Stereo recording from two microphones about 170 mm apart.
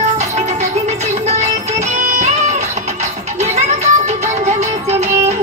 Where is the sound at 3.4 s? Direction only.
40° right (ahead or behind).